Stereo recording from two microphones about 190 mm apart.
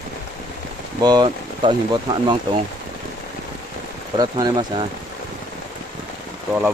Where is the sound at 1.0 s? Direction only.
20° right (ahead or behind).